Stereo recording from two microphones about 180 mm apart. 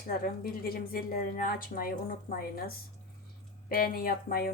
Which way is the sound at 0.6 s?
55° left (ahead or behind).